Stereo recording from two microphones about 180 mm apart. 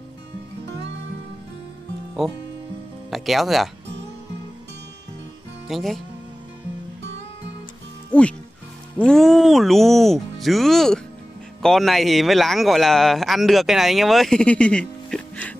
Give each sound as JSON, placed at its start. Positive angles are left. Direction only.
{"t": 2.2, "sound": "speech", "side_deg": 0}
{"t": 5.7, "sound": "speech", "side_deg": 0}
{"t": 8.1, "sound": "speech", "side_deg": 5}